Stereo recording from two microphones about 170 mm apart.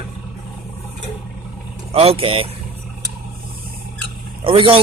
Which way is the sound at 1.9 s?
35° right (ahead or behind).